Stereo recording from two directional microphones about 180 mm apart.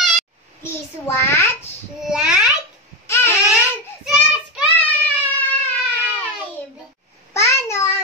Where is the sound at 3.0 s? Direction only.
15° left (ahead or behind).